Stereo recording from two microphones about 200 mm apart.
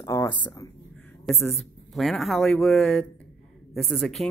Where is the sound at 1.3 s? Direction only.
Centre (ahead or behind).